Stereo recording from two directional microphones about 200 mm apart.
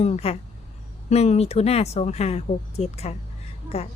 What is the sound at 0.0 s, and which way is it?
Speech, 30° left (ahead or behind).